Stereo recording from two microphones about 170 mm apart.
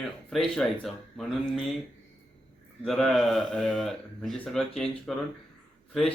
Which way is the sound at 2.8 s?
Centre (ahead or behind).